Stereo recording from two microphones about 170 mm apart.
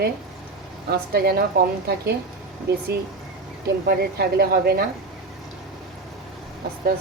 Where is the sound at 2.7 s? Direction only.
70° right (ahead or behind).